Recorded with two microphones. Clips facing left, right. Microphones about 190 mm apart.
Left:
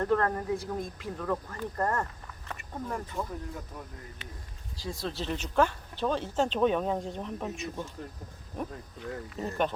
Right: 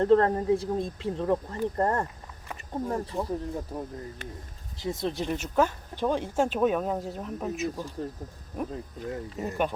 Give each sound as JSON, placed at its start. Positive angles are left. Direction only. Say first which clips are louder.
{"t": 0.0, "sound": "speech", "louder": "right 6 dB", "side_deg": -25}
{"t": 4.2, "sound": "speech", "louder": "right 6 dB", "side_deg": -45}
{"t": 4.8, "sound": "speech", "louder": "right 5 dB", "side_deg": -20}
{"t": 9.1, "sound": "speech", "louder": "right 1 dB", "side_deg": -20}